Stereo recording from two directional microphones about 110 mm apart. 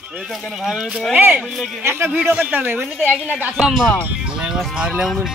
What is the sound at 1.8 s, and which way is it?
Speech, 20° right (ahead or behind).